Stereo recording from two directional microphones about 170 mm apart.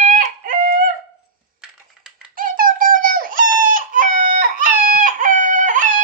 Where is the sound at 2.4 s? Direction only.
55° right (ahead or behind).